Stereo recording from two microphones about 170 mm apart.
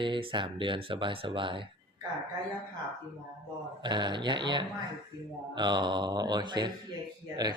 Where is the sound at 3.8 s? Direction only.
25° right (ahead or behind).